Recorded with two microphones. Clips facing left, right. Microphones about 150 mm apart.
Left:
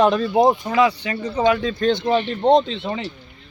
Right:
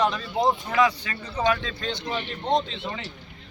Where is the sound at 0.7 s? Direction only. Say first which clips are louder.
Left 5 dB; 30° left (ahead or behind).